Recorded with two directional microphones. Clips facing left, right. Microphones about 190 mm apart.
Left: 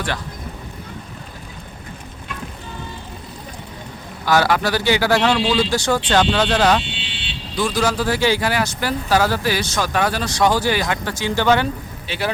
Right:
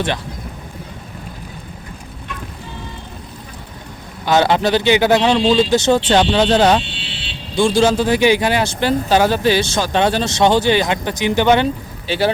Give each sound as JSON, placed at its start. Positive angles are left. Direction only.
{"t": 4.3, "sound": "speech", "side_deg": -25}
{"t": 12.0, "sound": "speech", "side_deg": -30}